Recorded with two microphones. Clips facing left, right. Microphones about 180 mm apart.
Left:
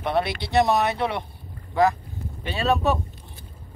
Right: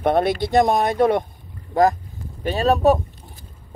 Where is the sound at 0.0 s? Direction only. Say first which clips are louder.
Right 6 dB; 45° right (ahead or behind).